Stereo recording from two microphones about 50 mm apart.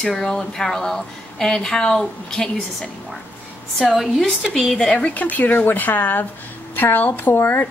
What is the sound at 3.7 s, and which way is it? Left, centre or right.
Speech, centre.